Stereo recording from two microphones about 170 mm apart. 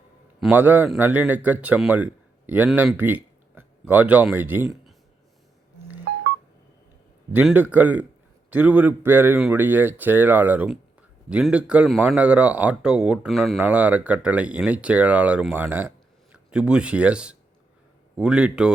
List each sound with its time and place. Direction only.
0.3 s speech: 5° right (ahead or behind)
7.3 s a man's voice: 10° right (ahead or behind)